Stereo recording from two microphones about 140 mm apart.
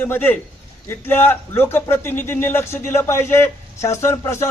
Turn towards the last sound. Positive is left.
turn(degrees=20)  # may be behind; listen again after turning